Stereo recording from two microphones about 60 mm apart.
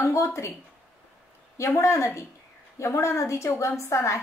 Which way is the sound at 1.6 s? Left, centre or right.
Left.